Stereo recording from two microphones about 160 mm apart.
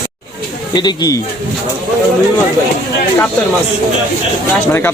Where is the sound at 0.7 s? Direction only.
25° left (ahead or behind).